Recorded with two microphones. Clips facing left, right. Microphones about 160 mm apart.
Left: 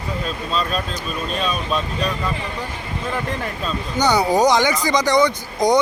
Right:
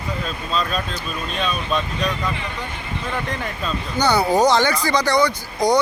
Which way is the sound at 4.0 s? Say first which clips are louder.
Even; 15° left (ahead or behind).